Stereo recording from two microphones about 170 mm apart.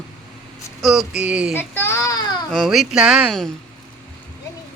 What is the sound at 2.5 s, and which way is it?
Speech, centre (ahead or behind).